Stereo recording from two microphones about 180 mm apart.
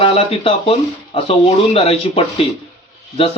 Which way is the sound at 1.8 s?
35° left (ahead or behind).